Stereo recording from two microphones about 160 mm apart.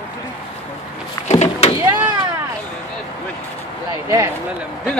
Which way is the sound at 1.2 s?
40° left (ahead or behind).